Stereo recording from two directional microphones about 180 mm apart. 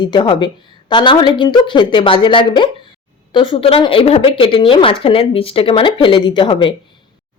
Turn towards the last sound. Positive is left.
turn(degrees=25)  # may be behind; listen again after turning